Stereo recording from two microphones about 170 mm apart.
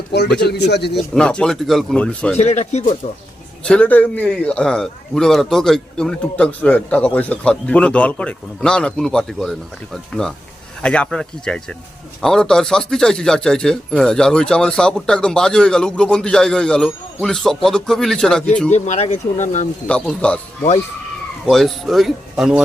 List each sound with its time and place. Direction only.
0.3 s speech: 75° left (ahead or behind)
0.9 s a man's voice: 5° left (ahead or behind)
2.4 s speech: 40° left (ahead or behind)
3.6 s a man's voice: 5° left (ahead or behind)
18.7 s speech: 40° left (ahead or behind)
19.9 s a man's voice: 5° left (ahead or behind)